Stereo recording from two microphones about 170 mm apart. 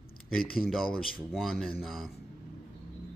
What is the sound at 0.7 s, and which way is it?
Speech, centre (ahead or behind).